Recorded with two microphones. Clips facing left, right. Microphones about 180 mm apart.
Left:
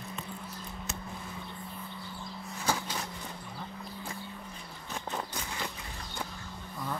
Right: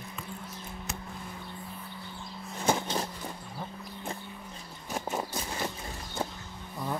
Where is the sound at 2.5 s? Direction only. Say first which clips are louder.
Right 5 dB; 25° right (ahead or behind).